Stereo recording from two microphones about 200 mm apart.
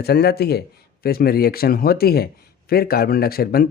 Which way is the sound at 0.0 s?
55° left (ahead or behind).